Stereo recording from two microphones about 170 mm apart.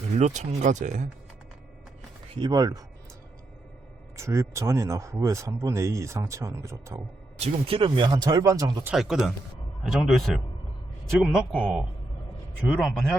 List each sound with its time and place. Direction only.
0.2 s speech: 40° right (ahead or behind)
2.3 s speech: 25° right (ahead or behind)
4.2 s speech: 15° right (ahead or behind)
7.3 s speech: 35° right (ahead or behind)
8.9 s a man's voice: centre (ahead or behind)